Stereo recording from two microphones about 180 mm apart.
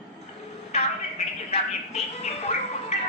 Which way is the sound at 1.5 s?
35° left (ahead or behind).